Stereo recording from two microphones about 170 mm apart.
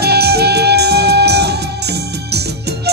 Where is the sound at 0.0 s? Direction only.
70° right (ahead or behind).